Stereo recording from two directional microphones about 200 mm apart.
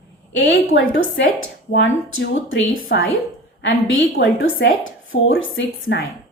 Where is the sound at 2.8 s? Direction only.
65° left (ahead or behind).